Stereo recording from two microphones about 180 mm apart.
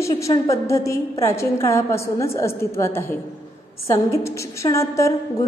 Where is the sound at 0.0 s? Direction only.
15° left (ahead or behind).